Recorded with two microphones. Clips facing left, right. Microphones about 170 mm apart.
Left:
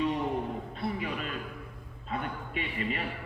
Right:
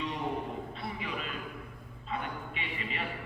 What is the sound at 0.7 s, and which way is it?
Music, 45° left (ahead or behind).